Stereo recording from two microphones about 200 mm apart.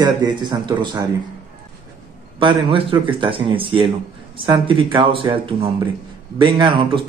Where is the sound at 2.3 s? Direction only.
25° right (ahead or behind).